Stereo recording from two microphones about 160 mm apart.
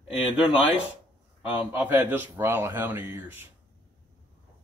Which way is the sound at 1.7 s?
15° right (ahead or behind).